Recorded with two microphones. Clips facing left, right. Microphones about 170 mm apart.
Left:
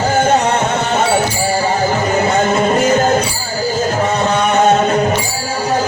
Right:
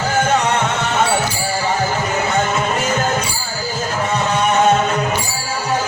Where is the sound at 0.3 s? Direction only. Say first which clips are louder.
Left 3 dB; 40° left (ahead or behind).